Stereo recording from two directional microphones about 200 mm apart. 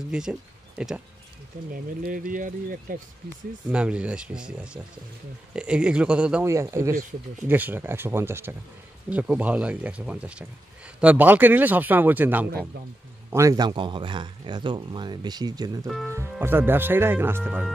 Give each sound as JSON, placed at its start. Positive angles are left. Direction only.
{"t": 0.1, "sound": "speech", "side_deg": -5}
{"t": 1.7, "sound": "speech", "side_deg": -45}
{"t": 3.7, "sound": "speech", "side_deg": -5}